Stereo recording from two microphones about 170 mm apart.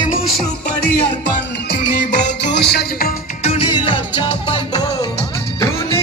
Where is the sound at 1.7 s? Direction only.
70° left (ahead or behind).